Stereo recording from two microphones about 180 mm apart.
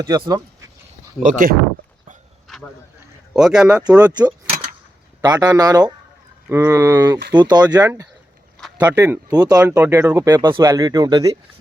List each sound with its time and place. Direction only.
0.0 s speech: 20° right (ahead or behind)
1.2 s speech: 45° right (ahead or behind)
2.5 s a sound: centre (ahead or behind)
3.3 s speech: 5° right (ahead or behind)
4.0 s speech: 25° right (ahead or behind)